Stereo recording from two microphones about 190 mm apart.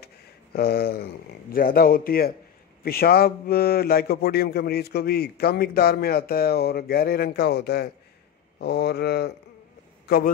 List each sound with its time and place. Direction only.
0.0 s a man's voice: 55° left (ahead or behind)